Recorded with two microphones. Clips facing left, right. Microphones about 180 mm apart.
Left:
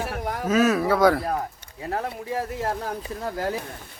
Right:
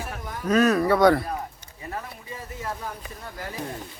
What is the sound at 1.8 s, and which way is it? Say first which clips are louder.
Speech: left 7 dB; 70° left (ahead or behind).